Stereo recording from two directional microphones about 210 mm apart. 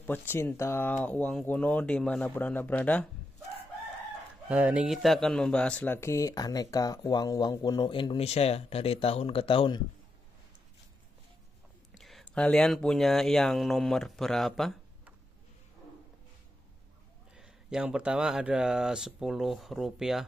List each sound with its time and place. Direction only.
0.0 s speech: 10° left (ahead or behind)
4.5 s speech: 5° right (ahead or behind); by 9.8 s 25° left (ahead or behind)
11.9 s speech: centre (ahead or behind)
17.4 s speech: 5° right (ahead or behind)